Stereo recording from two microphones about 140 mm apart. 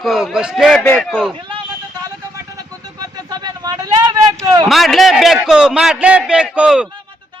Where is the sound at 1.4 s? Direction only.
35° right (ahead or behind).